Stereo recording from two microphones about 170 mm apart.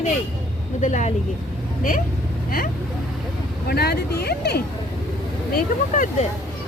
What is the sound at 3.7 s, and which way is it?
Speech, 70° left (ahead or behind).